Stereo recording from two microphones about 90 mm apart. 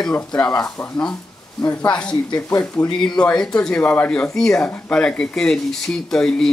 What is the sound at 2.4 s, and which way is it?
Speech, 30° left (ahead or behind).